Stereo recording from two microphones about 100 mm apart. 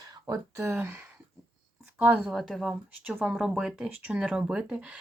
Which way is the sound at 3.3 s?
Centre (ahead or behind).